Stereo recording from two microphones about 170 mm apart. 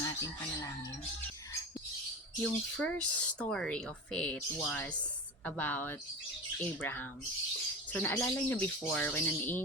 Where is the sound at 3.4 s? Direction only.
5° left (ahead or behind).